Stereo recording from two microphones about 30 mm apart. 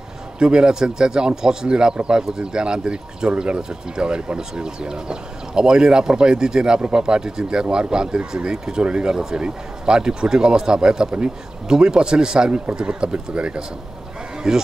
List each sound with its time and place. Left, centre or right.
0.4 s speech: right
4.4 s speech: right
14.5 s speech: right